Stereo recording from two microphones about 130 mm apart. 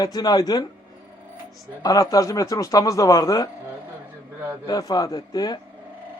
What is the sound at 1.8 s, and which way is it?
A man's voice, 25° left (ahead or behind).